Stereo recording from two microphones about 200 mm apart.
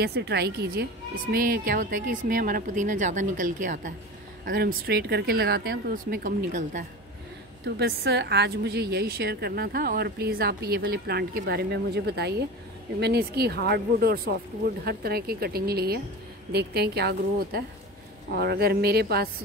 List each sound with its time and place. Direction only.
0.0 s a woman's voice: 55° right (ahead or behind)
7.6 s a woman's voice: 55° right (ahead or behind)